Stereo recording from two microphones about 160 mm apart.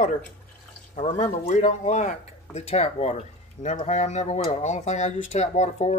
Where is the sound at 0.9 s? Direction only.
45° left (ahead or behind).